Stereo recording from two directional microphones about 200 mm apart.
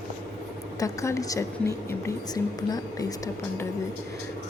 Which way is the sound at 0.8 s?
15° left (ahead or behind).